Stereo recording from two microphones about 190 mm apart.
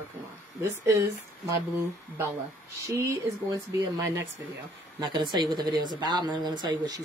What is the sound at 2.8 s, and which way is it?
A woman's voice, 15° right (ahead or behind).